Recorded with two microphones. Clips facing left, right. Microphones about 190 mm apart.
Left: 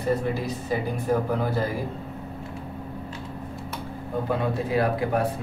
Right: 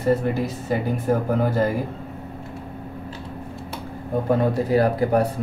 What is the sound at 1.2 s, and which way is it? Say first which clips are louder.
Speech: right 4 dB; 50° right (ahead or behind).